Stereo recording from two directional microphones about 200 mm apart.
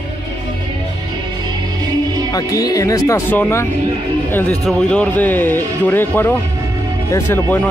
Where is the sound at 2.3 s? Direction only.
15° left (ahead or behind).